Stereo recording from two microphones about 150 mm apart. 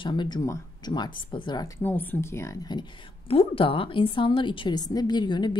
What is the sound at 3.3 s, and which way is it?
A woman's voice, 40° left (ahead or behind).